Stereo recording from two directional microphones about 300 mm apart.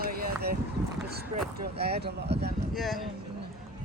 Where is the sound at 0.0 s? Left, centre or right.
Right.